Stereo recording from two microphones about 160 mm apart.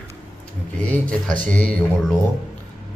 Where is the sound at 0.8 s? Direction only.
5° left (ahead or behind).